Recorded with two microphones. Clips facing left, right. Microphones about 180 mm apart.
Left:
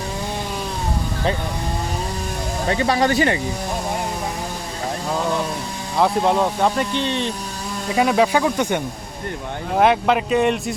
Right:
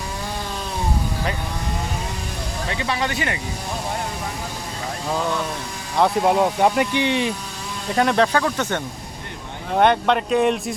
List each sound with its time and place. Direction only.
2.6 s speech: 40° left (ahead or behind)
6.0 s speech: 5° right (ahead or behind)
7.9 s speech: 5° left (ahead or behind)